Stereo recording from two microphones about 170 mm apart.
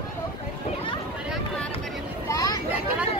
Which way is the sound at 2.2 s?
20° left (ahead or behind).